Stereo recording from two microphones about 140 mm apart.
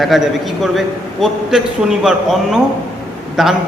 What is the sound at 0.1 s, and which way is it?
A man's voice, centre (ahead or behind).